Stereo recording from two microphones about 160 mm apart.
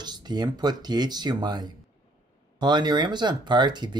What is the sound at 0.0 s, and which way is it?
Speech, 25° right (ahead or behind).